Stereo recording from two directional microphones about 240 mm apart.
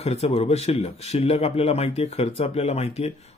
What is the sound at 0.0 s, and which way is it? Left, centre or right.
Speech, left.